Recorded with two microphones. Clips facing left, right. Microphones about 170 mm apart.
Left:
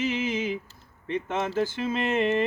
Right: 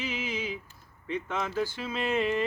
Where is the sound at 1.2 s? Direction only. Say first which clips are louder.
Left 5 dB; 25° left (ahead or behind).